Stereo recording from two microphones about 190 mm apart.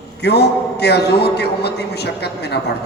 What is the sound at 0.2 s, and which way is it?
A man's voice, 60° left (ahead or behind).